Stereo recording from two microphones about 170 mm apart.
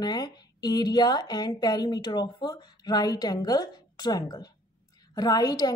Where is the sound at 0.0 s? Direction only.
25° left (ahead or behind).